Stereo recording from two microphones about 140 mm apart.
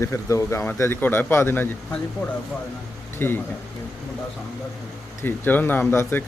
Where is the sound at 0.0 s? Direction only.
20° left (ahead or behind).